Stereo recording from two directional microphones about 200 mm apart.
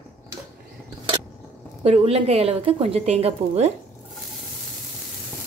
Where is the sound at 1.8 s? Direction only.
30° right (ahead or behind).